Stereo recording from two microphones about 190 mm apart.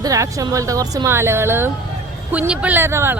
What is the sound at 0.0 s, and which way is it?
Speech, 15° right (ahead or behind).